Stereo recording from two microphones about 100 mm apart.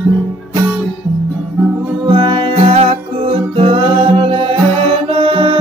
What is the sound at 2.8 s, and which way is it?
Music, 85° right.